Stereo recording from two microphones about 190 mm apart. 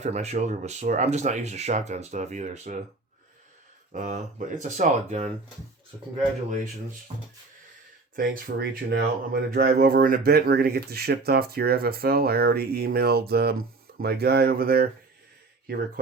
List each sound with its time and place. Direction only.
0.0 s speech: 35° right (ahead or behind)
3.9 s speech: 45° right (ahead or behind)
8.1 s speech: 50° right (ahead or behind)